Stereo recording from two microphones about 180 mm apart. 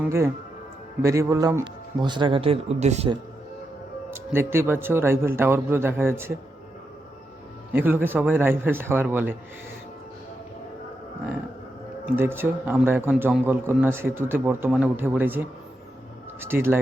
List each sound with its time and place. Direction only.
0.0 s a man's voice: 15° right (ahead or behind); by 3.1 s 35° right (ahead or behind)
4.1 s a man's voice: 15° right (ahead or behind)
7.7 s a man's voice: 10° right (ahead or behind)
12.0 s a man's voice: 10° right (ahead or behind)
16.4 s a man's voice: 15° right (ahead or behind)